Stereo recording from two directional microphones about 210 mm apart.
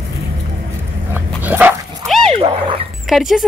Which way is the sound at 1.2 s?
10° right (ahead or behind).